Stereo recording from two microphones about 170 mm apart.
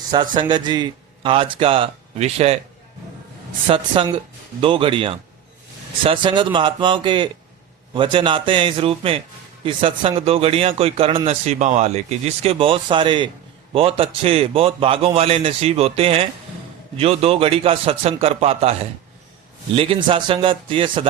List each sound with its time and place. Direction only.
0.1 s speech: 25° right (ahead or behind)
3.7 s speech: 30° right (ahead or behind)